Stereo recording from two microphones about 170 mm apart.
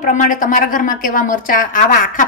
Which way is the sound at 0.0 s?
50° left (ahead or behind).